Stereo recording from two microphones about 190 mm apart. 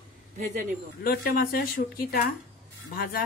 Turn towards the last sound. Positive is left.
turn(degrees=50)  # may be behind; listen again after turning